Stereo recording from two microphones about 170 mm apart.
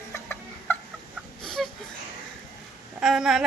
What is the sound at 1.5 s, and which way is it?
Wheeze, 5° left (ahead or behind).